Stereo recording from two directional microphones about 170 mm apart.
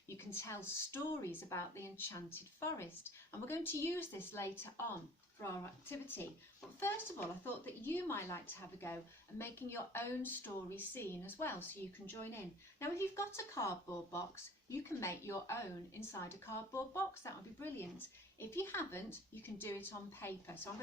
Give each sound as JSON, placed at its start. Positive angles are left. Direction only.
{"t": 0.1, "sound": "a woman's voice", "side_deg": 15}
{"t": 5.9, "sound": "a woman's voice", "side_deg": 15}